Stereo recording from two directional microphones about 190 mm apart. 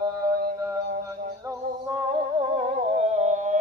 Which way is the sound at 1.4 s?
20° right (ahead or behind).